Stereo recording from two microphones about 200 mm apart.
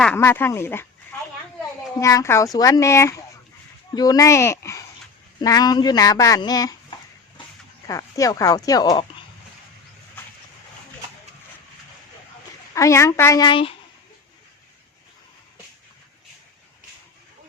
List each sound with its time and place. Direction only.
0.0 s speech: 10° left (ahead or behind)
2.0 s speech: 15° left (ahead or behind)
7.9 s speech: 15° left (ahead or behind)
12.7 s speech: 15° left (ahead or behind)